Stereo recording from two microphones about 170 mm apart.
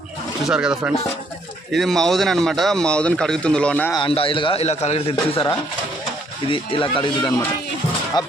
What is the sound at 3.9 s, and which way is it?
A man's voice, 30° left (ahead or behind).